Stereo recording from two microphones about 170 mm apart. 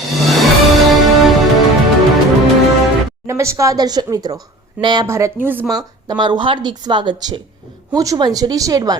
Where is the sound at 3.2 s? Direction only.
15° right (ahead or behind).